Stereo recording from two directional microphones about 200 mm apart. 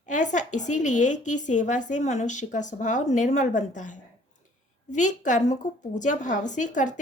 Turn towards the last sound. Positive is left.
turn(degrees=40)  # may be behind; listen again after turning